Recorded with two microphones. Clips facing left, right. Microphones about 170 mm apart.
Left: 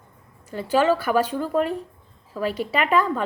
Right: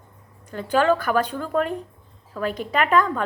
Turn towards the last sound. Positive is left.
turn(degrees=5)  # may be behind; listen again after turning